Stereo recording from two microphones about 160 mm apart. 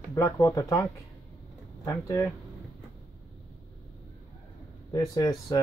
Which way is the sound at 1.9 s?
20° left (ahead or behind).